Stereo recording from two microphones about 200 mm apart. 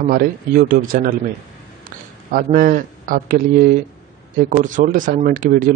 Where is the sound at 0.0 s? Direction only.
45° right (ahead or behind).